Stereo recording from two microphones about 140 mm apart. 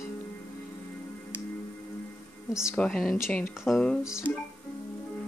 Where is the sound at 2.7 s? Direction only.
5° left (ahead or behind).